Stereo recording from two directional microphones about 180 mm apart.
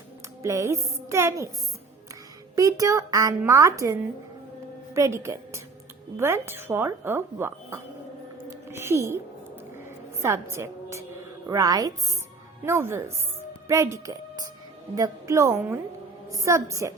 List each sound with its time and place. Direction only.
0.4 s speech: 15° right (ahead or behind)
2.6 s a woman's voice: 20° right (ahead or behind)
4.9 s speech: 15° right (ahead or behind)
10.2 s a woman's voice: 15° right (ahead or behind)